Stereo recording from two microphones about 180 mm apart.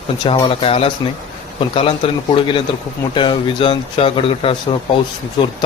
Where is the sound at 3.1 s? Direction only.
25° left (ahead or behind).